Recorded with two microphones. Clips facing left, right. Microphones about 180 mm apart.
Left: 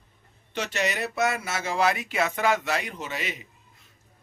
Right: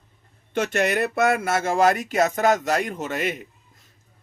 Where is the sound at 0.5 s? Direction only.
50° right (ahead or behind).